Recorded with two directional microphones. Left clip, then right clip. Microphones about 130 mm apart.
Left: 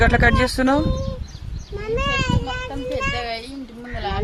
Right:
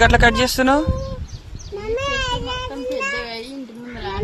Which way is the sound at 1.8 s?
65° right (ahead or behind).